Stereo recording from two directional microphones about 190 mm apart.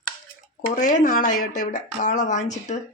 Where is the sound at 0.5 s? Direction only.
40° left (ahead or behind).